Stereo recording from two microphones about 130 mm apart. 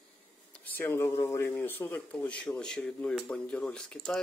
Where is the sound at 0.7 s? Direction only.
15° left (ahead or behind).